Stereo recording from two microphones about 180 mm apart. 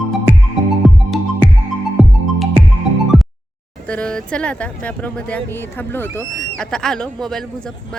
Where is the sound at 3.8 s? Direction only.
5° left (ahead or behind).